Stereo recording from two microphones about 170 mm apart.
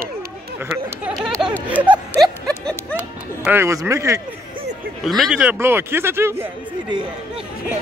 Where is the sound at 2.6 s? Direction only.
5° left (ahead or behind).